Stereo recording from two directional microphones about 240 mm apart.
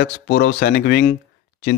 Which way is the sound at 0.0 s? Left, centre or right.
Left.